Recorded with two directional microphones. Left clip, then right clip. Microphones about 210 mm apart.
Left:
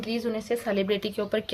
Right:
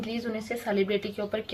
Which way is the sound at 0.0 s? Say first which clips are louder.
Left 3 dB; 40° left (ahead or behind).